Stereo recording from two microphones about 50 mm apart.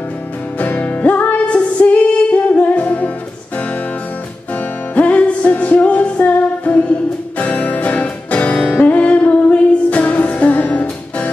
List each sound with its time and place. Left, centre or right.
0.6 s music: left
4.6 s music: left